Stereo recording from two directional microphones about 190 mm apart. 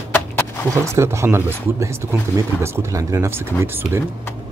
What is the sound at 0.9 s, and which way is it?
Speech, 15° right (ahead or behind).